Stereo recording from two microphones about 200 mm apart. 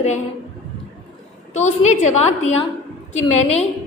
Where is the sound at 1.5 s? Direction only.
35° left (ahead or behind).